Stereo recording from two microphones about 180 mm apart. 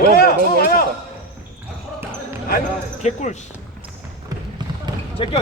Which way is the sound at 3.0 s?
40° left (ahead or behind).